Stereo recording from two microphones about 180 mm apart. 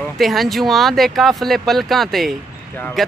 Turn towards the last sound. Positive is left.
turn(degrees=0)  # may be behind; listen again after turning